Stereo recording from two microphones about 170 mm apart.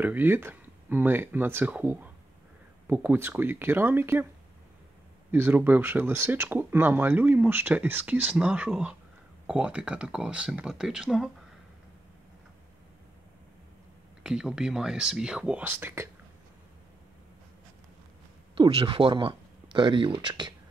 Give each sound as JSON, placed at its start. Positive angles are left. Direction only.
{"t": 0.0, "sound": "speech", "side_deg": -10}
{"t": 5.3, "sound": "speech", "side_deg": -10}
{"t": 14.2, "sound": "speech", "side_deg": -5}
{"t": 18.6, "sound": "speech", "side_deg": -30}